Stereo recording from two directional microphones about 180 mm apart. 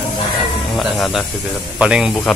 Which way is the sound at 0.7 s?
Centre (ahead or behind).